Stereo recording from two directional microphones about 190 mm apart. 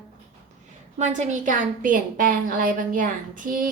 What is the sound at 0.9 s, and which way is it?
A woman's voice, 40° right (ahead or behind).